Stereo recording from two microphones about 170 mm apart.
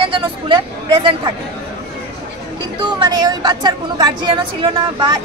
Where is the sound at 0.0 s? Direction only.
30° right (ahead or behind).